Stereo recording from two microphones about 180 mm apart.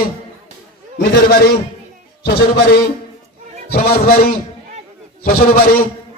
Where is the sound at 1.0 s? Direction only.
55° left (ahead or behind).